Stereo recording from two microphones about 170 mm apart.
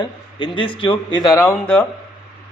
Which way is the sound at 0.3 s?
25° left (ahead or behind).